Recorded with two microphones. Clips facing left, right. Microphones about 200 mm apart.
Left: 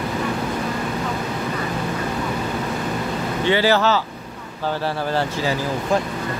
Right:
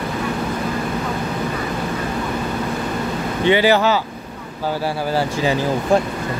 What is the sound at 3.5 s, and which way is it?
Speech, 15° right (ahead or behind).